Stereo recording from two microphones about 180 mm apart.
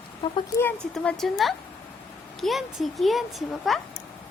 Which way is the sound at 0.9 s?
5° left (ahead or behind).